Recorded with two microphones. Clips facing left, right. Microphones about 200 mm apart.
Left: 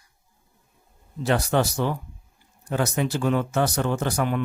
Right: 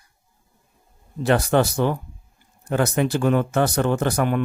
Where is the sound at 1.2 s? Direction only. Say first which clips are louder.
Right 4 dB; 55° right (ahead or behind).